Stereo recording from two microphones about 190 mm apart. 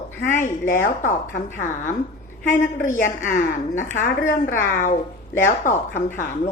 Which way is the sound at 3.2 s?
45° left (ahead or behind).